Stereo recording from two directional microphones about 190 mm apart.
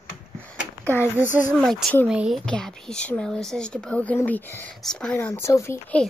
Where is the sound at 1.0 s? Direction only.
10° right (ahead or behind).